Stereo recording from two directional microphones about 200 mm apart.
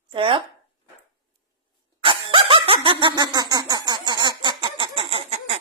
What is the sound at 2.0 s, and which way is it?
Laughter, 25° right (ahead or behind).